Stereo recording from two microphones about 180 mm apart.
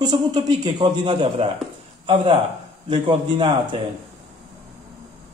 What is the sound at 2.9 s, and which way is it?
Speech, 30° right (ahead or behind).